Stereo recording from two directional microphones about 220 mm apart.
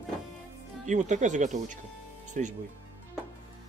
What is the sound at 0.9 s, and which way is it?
Speech, 35° right (ahead or behind).